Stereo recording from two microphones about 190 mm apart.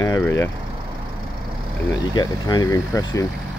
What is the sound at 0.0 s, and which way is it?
Speech, 20° left (ahead or behind).